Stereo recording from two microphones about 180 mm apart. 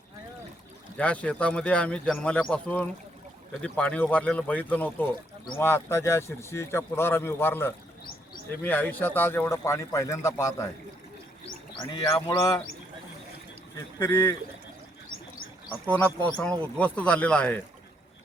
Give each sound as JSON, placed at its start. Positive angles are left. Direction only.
{"t": 0.9, "sound": "speech", "side_deg": 10}
{"t": 11.9, "sound": "speech", "side_deg": 25}
{"t": 13.7, "sound": "speech", "side_deg": 15}
{"t": 15.7, "sound": "speech", "side_deg": 10}